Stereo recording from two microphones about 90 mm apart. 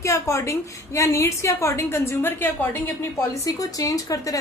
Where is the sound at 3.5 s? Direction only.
45° left (ahead or behind).